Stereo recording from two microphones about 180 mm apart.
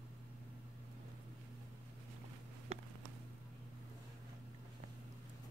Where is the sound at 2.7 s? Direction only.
35° right (ahead or behind).